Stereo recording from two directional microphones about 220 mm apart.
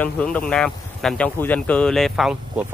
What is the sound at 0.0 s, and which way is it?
Speech, 5° left (ahead or behind).